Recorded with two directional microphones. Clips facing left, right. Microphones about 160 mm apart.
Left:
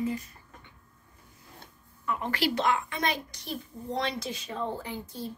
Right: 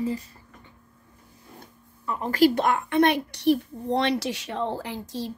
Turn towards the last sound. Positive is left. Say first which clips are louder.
# right 5 dB
turn(degrees=-90)